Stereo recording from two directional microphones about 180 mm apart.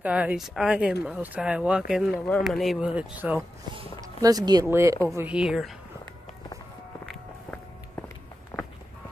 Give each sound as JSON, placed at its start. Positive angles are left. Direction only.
{"t": 0.0, "sound": "speech", "side_deg": -5}
{"t": 4.2, "sound": "a woman's voice", "side_deg": -20}